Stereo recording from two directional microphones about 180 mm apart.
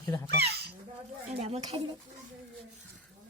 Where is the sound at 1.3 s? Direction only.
35° right (ahead or behind).